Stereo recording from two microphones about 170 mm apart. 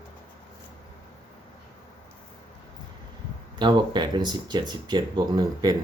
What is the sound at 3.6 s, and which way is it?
Speech, 25° right (ahead or behind).